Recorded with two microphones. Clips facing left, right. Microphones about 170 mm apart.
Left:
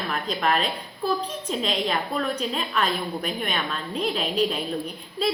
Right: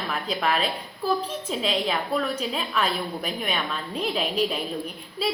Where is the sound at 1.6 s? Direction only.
5° right (ahead or behind).